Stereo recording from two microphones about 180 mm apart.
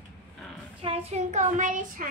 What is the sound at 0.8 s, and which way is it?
Child singing, 35° right (ahead or behind).